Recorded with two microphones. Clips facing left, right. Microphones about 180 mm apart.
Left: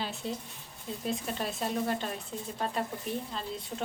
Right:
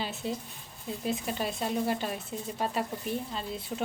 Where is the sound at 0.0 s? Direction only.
Centre (ahead or behind).